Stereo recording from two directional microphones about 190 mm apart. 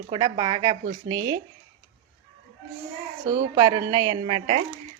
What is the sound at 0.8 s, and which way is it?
Speech, 50° right (ahead or behind).